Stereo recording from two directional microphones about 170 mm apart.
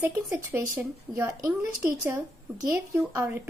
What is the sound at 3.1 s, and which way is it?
Speech, 15° right (ahead or behind).